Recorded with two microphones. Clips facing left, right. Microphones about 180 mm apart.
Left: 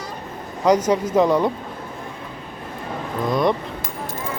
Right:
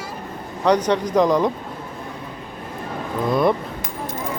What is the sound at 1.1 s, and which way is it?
Speech, 5° left (ahead or behind).